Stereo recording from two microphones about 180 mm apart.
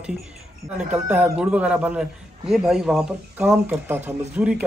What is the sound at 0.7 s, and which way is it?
A man's voice, 10° right (ahead or behind).